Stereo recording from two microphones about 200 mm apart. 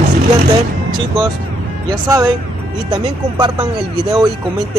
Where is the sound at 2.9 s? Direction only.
20° right (ahead or behind).